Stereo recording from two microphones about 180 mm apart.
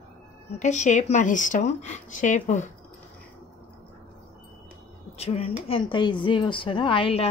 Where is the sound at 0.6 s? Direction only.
40° left (ahead or behind).